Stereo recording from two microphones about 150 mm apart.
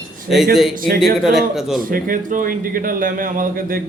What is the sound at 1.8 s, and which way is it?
A man's voice, 70° right (ahead or behind).